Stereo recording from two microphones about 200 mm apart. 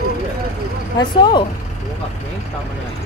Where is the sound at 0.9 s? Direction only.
20° left (ahead or behind).